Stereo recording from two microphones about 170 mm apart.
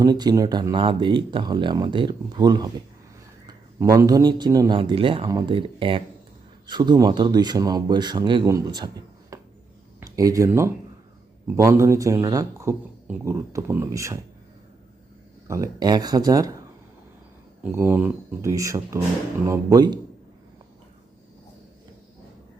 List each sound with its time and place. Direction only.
0.0 s speech: 25° right (ahead or behind)
9.3 s a sound: 20° right (ahead or behind)
10.0 s speech: 20° right (ahead or behind)
15.4 s speech: 20° right (ahead or behind)
17.6 s speech: 15° right (ahead or behind)